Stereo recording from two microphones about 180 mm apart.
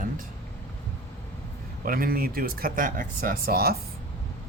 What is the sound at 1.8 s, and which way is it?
Speech, 50° right (ahead or behind).